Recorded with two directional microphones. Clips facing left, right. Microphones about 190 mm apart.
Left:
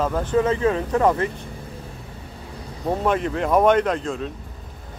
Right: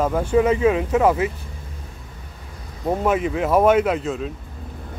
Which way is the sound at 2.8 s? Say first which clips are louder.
Right 1 dB; 5° right (ahead or behind).